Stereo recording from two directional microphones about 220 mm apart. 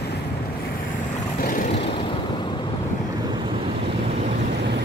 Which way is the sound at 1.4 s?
40° left (ahead or behind).